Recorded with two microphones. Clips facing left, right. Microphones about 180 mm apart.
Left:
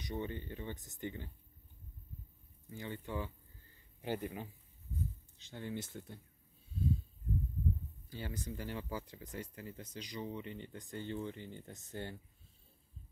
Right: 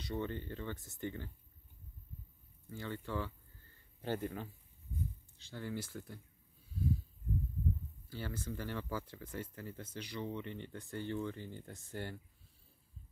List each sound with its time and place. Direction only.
0.0 s speech: 15° left (ahead or behind)
2.7 s speech: 15° left (ahead or behind)
6.7 s wheeze: 25° left (ahead or behind)
8.1 s speech: 20° left (ahead or behind)